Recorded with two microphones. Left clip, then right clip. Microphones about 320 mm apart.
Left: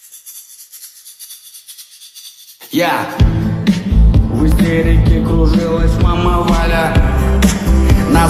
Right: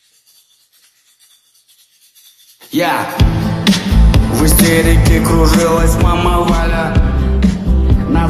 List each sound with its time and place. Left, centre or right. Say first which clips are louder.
2.6 s music: even; centre; by 5.4 s right
5.4 s music: right 4 dB; right; by 6.4 s centre
6.4 s music: left 1 dB; centre; by 7.7 s left
7.7 s music: left 5 dB; left